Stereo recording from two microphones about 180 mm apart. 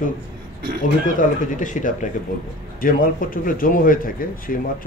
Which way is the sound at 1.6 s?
45° left (ahead or behind).